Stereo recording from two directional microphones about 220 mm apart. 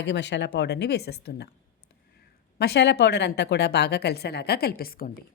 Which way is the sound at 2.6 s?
50° left (ahead or behind).